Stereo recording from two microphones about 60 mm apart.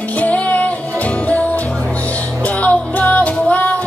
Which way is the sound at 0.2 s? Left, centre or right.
Left.